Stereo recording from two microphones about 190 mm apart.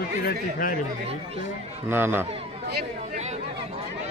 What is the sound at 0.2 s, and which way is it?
Speech, 45° left (ahead or behind).